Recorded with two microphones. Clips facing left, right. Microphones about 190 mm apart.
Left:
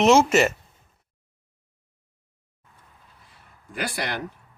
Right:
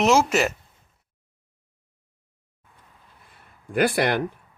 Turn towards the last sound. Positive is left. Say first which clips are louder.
# right 9 dB
turn(degrees=-55)  # may be behind; listen again after turning